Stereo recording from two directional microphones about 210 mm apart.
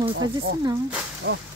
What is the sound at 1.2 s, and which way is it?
Speech, 55° right (ahead or behind).